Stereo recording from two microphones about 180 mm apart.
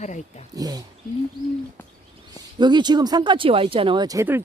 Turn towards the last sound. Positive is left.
turn(degrees=-15)  # may be behind; listen again after turning